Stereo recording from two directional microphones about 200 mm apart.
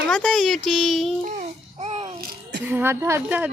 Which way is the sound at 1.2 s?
35° right (ahead or behind).